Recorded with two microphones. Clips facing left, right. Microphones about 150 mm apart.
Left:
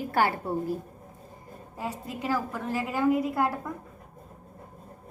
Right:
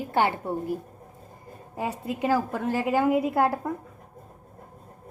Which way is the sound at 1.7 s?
60° right (ahead or behind).